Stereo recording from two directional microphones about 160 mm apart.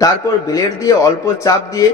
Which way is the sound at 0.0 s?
20° left (ahead or behind).